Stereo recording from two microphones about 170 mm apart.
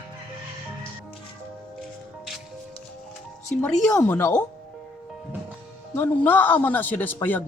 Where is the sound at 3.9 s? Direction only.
10° left (ahead or behind).